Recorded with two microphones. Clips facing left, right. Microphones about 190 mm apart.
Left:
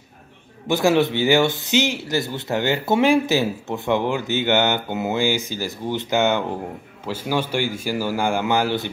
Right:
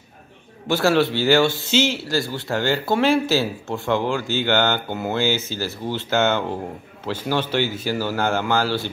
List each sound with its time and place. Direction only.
0.7 s a man's voice: 15° left (ahead or behind)